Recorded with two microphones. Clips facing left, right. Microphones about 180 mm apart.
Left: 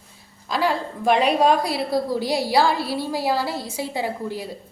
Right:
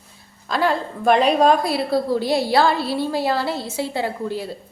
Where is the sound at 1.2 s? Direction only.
15° left (ahead or behind).